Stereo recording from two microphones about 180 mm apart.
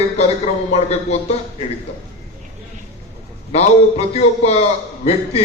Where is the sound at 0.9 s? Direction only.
35° left (ahead or behind).